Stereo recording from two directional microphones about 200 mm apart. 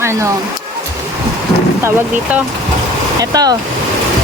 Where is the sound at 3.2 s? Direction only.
20° right (ahead or behind).